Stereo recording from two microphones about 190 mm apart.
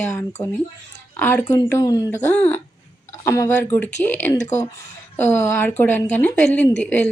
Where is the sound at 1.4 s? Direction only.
20° left (ahead or behind).